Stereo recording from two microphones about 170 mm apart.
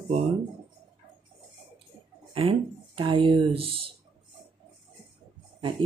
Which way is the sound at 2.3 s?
35° right (ahead or behind).